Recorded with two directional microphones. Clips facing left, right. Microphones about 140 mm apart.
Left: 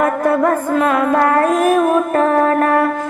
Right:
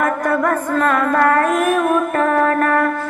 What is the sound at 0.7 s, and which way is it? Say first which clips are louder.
Music: left 1 dB; 15° left (ahead or behind).